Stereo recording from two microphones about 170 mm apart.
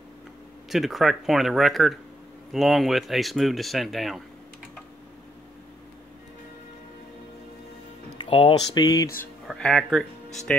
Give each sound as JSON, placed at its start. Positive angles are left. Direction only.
{"t": 0.7, "sound": "speech", "side_deg": 0}
{"t": 8.3, "sound": "speech", "side_deg": 30}
{"t": 9.5, "sound": "speech", "side_deg": 5}